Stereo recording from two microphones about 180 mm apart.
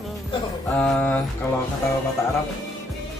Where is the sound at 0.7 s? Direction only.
10° left (ahead or behind).